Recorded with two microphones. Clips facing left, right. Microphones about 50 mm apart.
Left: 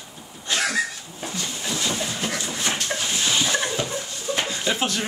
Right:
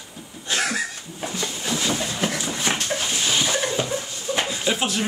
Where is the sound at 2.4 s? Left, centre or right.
Centre.